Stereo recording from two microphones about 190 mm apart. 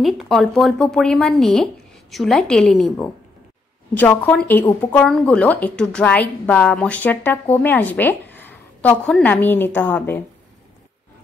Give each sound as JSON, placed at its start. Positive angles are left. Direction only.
{"t": 0.0, "sound": "speech", "side_deg": 0}